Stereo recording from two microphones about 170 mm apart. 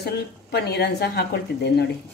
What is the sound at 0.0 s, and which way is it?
Speech, 70° left (ahead or behind).